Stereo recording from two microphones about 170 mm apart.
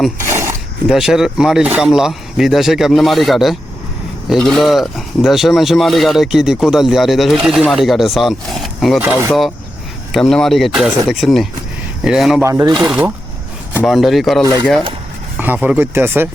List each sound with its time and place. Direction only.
0.2 s a sound: 15° right (ahead or behind)
0.9 s speech: centre (ahead or behind)
9.0 s speech: 10° right (ahead or behind)
10.1 s speech: centre (ahead or behind)
12.4 s speech: 15° right (ahead or behind)
14.4 s speech: 20° right (ahead or behind)
15.4 s speech: 10° right (ahead or behind)